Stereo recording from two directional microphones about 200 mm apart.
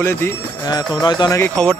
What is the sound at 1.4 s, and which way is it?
Speech, 5° left (ahead or behind).